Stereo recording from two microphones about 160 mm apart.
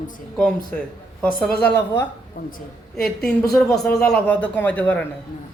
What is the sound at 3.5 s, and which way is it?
Speech, 5° left (ahead or behind).